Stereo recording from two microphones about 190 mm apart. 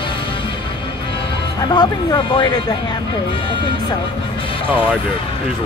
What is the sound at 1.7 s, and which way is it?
Speech, 25° left (ahead or behind).